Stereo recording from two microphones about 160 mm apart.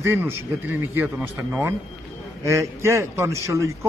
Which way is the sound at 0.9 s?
5° right (ahead or behind).